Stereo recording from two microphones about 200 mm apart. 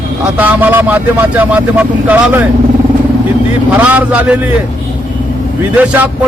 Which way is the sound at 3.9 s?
5° right (ahead or behind).